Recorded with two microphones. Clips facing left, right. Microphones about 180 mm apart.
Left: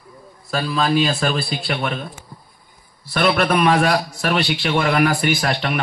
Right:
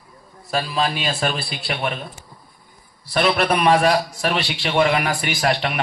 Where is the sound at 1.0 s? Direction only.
40° left (ahead or behind).